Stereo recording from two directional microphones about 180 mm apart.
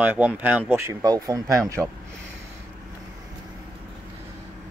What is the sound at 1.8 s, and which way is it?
Speech, centre (ahead or behind).